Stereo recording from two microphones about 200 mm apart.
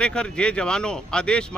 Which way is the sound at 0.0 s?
5° left (ahead or behind).